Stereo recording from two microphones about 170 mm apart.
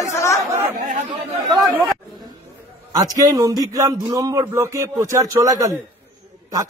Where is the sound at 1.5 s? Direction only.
15° right (ahead or behind).